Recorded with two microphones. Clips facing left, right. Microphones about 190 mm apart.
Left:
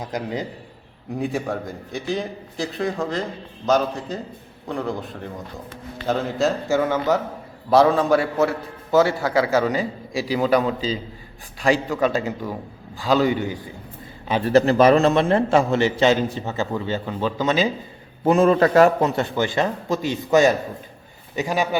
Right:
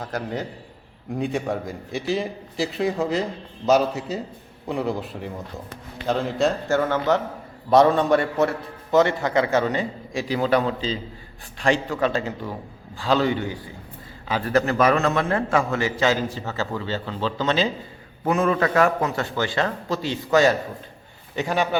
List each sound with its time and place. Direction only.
0.0 s speech: 15° left (ahead or behind)
1.2 s a man's voice: centre (ahead or behind)
14.3 s a man's voice: 25° left (ahead or behind)
18.3 s a man's voice: 30° left (ahead or behind); by 21.8 s 10° left (ahead or behind)